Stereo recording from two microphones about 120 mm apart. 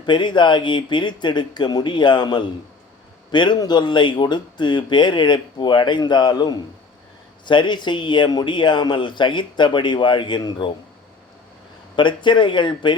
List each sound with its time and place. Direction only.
0.0 s a man's voice: 40° left (ahead or behind)
11.9 s a man's voice: 40° left (ahead or behind)